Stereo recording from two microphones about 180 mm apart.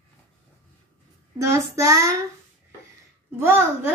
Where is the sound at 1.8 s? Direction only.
15° right (ahead or behind).